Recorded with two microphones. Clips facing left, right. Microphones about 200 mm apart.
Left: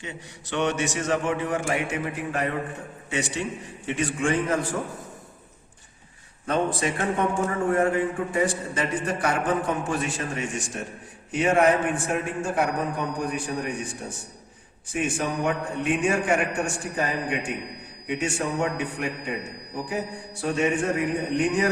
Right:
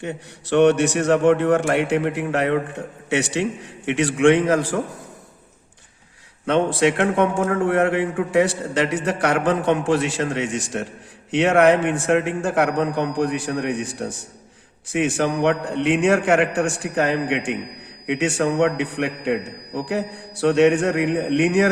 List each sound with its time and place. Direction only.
0.0 s a man's voice: 65° right (ahead or behind); by 4.8 s 80° right
6.4 s a man's voice: 80° right